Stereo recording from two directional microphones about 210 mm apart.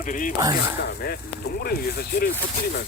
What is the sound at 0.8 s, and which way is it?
Speech, 50° left (ahead or behind).